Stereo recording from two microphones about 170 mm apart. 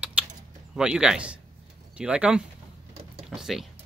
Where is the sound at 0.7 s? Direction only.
5° right (ahead or behind).